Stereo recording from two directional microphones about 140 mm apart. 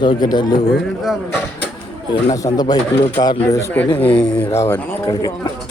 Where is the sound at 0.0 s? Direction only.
30° left (ahead or behind).